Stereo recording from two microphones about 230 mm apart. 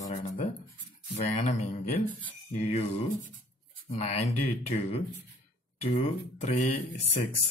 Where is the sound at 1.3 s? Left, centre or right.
Left.